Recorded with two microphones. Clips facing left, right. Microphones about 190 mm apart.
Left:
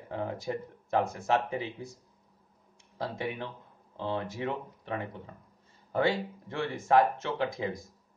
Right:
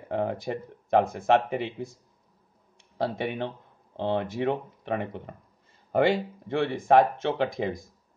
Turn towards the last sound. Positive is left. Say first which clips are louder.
# right 5 dB
turn(degrees=-65)  # may be behind; listen again after turning